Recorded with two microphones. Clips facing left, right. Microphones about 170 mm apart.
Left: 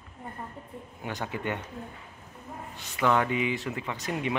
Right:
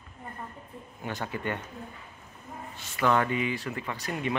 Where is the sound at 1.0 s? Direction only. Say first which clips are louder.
Even; 15° left (ahead or behind).